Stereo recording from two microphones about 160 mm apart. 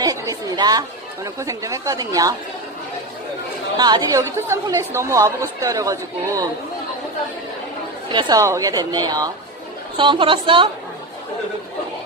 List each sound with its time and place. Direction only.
0.0 s speech: 20° right (ahead or behind)
3.7 s speech: 25° right (ahead or behind)
8.1 s speech: 25° right (ahead or behind)